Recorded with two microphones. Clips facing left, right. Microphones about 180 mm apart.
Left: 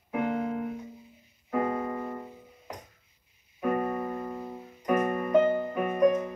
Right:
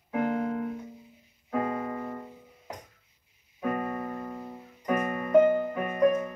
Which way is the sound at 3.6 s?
5° left (ahead or behind).